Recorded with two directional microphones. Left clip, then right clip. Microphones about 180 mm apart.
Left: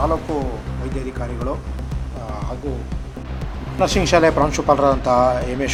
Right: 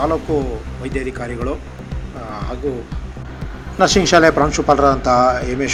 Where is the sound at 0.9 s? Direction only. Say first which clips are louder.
Right 6 dB; 25° right (ahead or behind).